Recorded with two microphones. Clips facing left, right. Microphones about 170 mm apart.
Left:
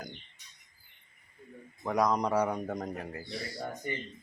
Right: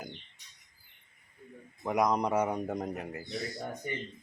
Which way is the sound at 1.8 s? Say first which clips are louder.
Even; 20° right (ahead or behind).